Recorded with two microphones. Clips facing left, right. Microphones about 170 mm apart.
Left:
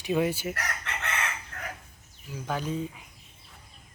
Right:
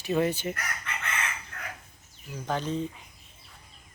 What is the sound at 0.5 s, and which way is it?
Chicken, 70° left (ahead or behind).